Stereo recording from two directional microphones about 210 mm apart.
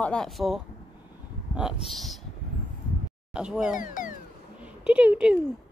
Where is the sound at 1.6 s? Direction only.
Centre (ahead or behind).